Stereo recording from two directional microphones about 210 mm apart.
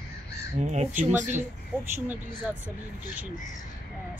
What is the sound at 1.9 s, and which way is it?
Speech, 10° right (ahead or behind).